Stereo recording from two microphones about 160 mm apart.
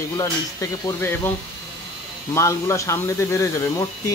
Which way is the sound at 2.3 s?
15° left (ahead or behind).